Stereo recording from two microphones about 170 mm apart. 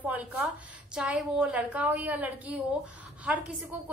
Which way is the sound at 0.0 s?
10° right (ahead or behind).